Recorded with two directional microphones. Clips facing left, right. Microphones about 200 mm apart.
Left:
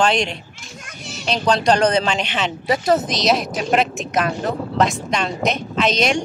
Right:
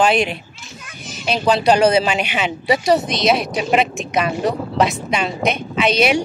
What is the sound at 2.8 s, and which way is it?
Speech, centre (ahead or behind).